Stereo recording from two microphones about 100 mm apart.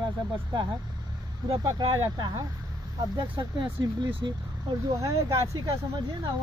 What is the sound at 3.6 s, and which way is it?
Speech, 60° right (ahead or behind).